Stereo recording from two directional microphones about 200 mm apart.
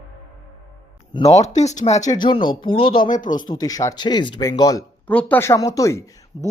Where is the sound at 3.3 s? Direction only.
20° left (ahead or behind).